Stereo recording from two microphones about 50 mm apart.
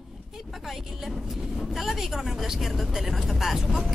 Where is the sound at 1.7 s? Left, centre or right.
Centre.